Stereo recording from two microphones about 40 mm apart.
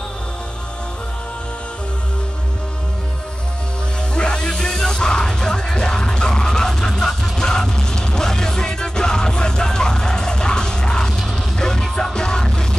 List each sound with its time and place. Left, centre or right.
4.1 s music: left